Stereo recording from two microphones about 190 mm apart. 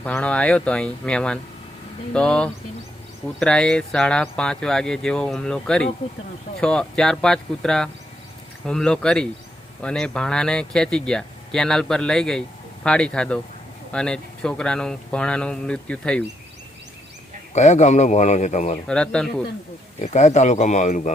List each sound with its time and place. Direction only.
0.0 s speech: 5° left (ahead or behind)
17.5 s a man's voice: 35° left (ahead or behind)
18.9 s speech: 5° left (ahead or behind)
20.0 s a man's voice: 40° left (ahead or behind)